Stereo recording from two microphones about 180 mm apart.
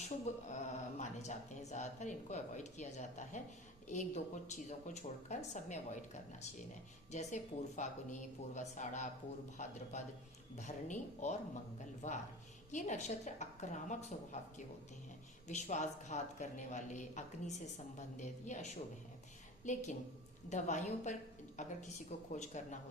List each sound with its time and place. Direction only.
0.5 s speech: 40° left (ahead or behind)
7.1 s a woman's voice: 40° left (ahead or behind)